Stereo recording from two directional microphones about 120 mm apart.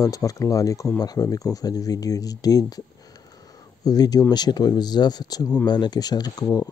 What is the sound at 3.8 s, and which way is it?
Speech, 30° left (ahead or behind).